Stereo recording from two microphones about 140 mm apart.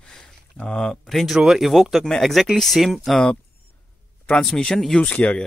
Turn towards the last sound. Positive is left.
turn(degrees=10)  # may be behind; listen again after turning